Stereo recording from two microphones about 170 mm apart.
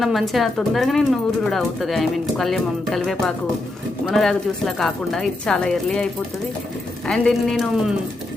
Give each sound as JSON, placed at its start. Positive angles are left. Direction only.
{"t": 0.0, "sound": "speech", "side_deg": 0}
{"t": 7.1, "sound": "speech", "side_deg": 5}